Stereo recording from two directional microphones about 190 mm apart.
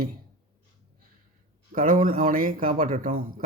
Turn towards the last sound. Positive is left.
turn(degrees=-45)  # may be behind; listen again after turning